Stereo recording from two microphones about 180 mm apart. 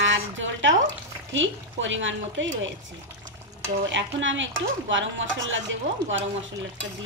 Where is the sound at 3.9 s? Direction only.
90° right.